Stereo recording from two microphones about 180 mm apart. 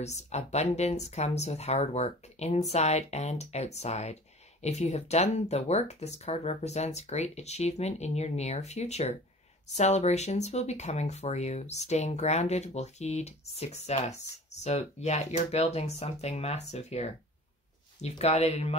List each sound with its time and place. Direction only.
0.0 s speech: 40° left (ahead or behind)